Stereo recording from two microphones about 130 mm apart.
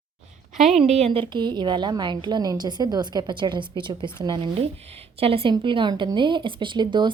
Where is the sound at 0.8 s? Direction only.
55° right (ahead or behind); by 4.4 s 35° right (ahead or behind).